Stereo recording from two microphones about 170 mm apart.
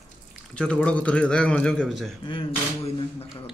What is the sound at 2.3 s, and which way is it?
Speech, 30° left (ahead or behind).